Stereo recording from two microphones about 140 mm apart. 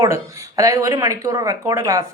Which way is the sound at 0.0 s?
25° right (ahead or behind).